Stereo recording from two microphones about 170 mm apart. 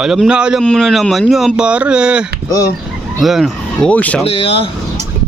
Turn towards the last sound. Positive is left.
turn(degrees=35)  # may be behind; listen again after turning